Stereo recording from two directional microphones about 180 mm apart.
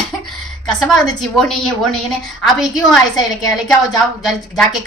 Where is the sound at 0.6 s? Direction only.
Centre (ahead or behind).